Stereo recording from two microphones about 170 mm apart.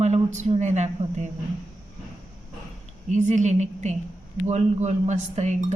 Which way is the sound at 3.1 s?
45° right (ahead or behind).